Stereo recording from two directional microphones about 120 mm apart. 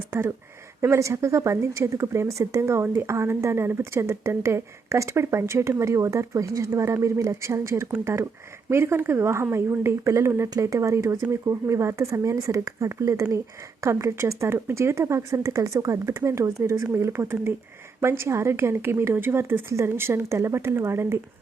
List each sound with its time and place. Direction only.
0.1 s speech: 20° right (ahead or behind)